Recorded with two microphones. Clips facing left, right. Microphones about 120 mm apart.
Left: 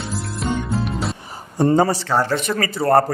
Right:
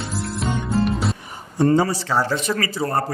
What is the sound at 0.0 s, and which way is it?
Music, centre (ahead or behind).